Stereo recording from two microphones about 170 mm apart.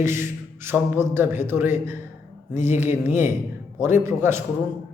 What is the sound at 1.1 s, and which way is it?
Speech, 15° right (ahead or behind).